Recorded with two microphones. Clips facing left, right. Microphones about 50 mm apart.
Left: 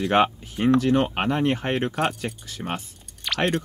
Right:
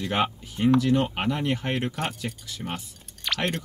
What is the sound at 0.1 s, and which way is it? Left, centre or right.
Speech, left.